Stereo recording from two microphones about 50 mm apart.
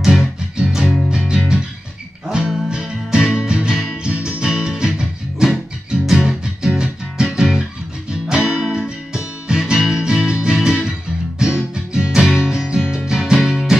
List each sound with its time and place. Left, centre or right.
0.0 s music: centre
3.7 s music: centre
4.0 s music: centre